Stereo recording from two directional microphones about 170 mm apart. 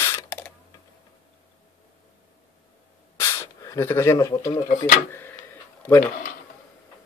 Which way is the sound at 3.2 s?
20° left (ahead or behind).